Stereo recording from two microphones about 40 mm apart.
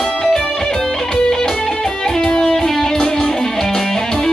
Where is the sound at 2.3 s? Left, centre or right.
Left.